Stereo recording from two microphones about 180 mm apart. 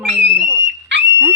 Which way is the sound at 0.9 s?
80° right.